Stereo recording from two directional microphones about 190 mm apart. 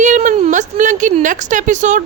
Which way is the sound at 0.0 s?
40° right (ahead or behind).